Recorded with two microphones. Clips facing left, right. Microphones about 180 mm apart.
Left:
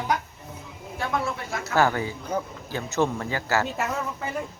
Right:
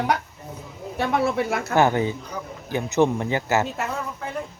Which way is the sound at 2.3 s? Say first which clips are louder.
Left 5 dB; 50° left (ahead or behind).